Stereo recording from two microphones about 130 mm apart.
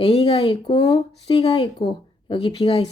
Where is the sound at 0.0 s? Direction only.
50° left (ahead or behind).